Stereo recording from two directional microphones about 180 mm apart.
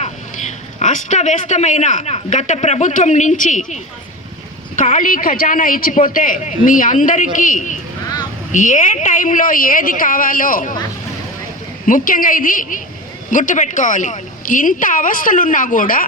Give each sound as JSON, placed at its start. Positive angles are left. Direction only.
{"t": 0.0, "sound": "a man's voice", "side_deg": 40}
{"t": 4.8, "sound": "a woman's voice", "side_deg": 45}
{"t": 11.9, "sound": "a woman's voice", "side_deg": 50}